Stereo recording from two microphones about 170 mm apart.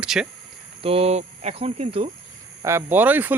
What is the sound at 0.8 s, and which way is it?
Speech, 35° right (ahead or behind).